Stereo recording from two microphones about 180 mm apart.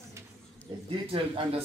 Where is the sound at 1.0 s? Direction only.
30° right (ahead or behind).